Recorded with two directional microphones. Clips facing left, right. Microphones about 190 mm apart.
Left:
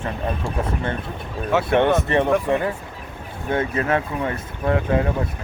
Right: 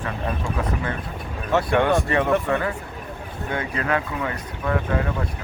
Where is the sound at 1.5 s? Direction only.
Centre (ahead or behind).